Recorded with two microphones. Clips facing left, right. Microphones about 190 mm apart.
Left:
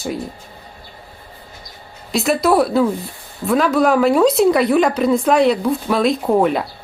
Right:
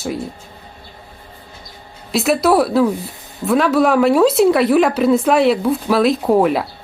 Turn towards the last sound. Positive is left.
turn(degrees=-5)  # may be behind; listen again after turning